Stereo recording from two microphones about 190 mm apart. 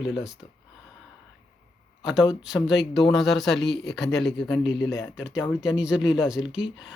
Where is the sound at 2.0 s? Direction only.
Centre (ahead or behind).